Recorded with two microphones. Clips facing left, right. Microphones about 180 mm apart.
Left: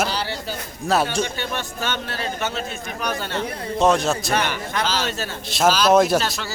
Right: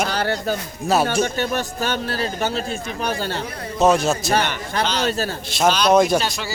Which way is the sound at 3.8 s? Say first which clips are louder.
Right 2 dB; 5° right (ahead or behind).